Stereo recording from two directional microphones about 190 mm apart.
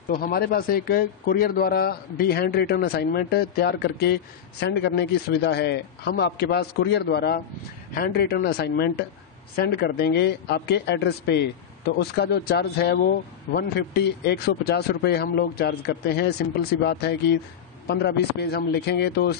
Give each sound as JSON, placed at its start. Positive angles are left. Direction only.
{"t": 0.1, "sound": "speech", "side_deg": 50}